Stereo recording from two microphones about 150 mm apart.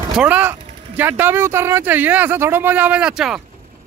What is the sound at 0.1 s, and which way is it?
Speech, 10° right (ahead or behind).